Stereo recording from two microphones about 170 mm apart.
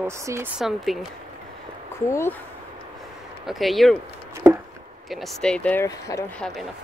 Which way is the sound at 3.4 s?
Centre (ahead or behind).